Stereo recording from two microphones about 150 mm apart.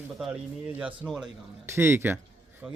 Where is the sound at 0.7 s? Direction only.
10° right (ahead or behind).